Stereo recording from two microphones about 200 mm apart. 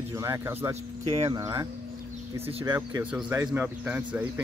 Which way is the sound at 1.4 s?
15° right (ahead or behind).